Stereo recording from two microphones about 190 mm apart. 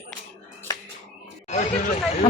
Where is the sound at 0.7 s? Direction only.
20° left (ahead or behind).